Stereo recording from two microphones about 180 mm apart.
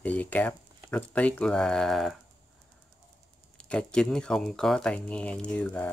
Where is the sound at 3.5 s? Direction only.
5° left (ahead or behind).